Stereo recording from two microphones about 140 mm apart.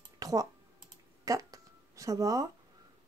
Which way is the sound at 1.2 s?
25° right (ahead or behind).